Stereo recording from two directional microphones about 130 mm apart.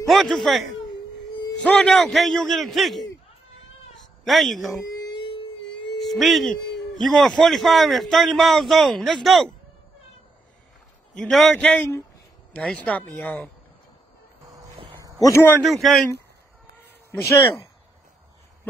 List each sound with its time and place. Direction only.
0.0 s a man's voice: centre (ahead or behind)
4.2 s a man's voice: centre (ahead or behind)
5.0 s music: 40° left (ahead or behind)
5.9 s a man's voice: centre (ahead or behind)
11.1 s speech: centre (ahead or behind)
15.1 s a man's voice: 25° left (ahead or behind)
15.6 s a man's voice: centre (ahead or behind)